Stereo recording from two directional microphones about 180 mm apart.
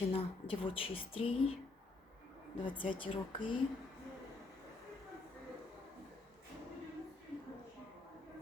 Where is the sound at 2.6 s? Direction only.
30° left (ahead or behind).